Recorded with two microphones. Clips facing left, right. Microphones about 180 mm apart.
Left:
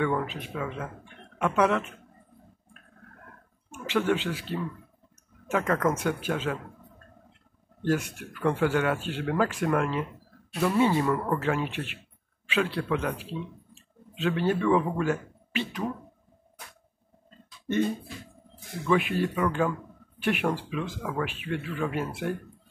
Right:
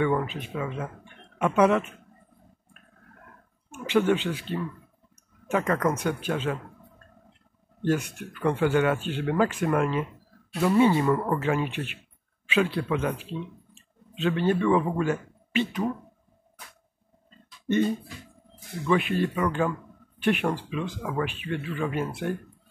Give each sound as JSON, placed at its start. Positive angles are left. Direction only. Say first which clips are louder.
{"t": 0.0, "sound": "speech", "louder": "right 2 dB", "side_deg": 0}
{"t": 3.8, "sound": "speech", "louder": "right 3 dB", "side_deg": 0}
{"t": 7.8, "sound": "speech", "louder": "right 1 dB", "side_deg": 0}
{"t": 18.9, "sound": "speech", "louder": "right 1 dB", "side_deg": 0}